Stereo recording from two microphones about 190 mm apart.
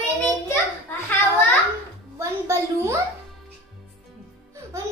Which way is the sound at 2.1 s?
15° right (ahead or behind).